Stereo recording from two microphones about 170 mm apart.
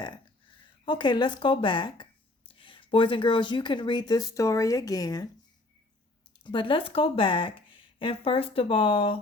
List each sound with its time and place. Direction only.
0.9 s speech: 25° left (ahead or behind)
6.4 s speech: 30° left (ahead or behind)